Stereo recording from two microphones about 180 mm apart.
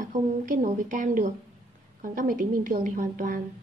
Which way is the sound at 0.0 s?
45° right (ahead or behind).